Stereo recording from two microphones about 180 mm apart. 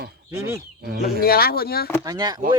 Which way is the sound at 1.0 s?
55° left (ahead or behind).